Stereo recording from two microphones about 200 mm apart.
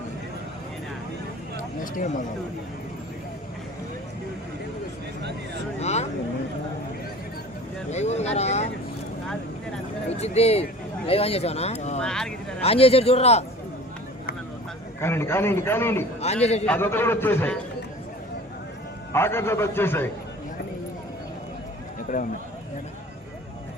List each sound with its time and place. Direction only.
1.8 s speech: 40° left (ahead or behind)
5.8 s vehicle: 35° left (ahead or behind)
7.9 s speech: 35° left (ahead or behind)
10.1 s speech: 30° left (ahead or behind)
12.0 s speech: 5° left (ahead or behind)
12.6 s a man's voice: 30° left (ahead or behind)
15.0 s a man's voice: 10° left (ahead or behind)
16.2 s speech: 35° left (ahead or behind)
16.6 s a man's voice: 10° left (ahead or behind)
19.1 s a man's voice: 10° left (ahead or behind)
22.1 s speech: 40° left (ahead or behind)